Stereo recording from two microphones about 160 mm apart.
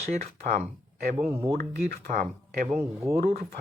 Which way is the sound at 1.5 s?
80° right.